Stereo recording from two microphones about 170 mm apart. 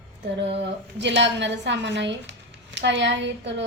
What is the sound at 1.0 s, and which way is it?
A woman's voice, 90° right.